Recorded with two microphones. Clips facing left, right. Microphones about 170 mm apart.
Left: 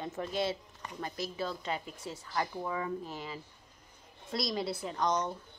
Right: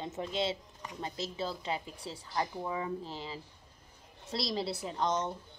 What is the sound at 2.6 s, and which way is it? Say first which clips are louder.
A woman's voice: even; 20° right (ahead or behind).